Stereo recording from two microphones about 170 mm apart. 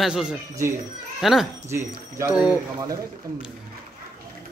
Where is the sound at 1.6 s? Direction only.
15° right (ahead or behind).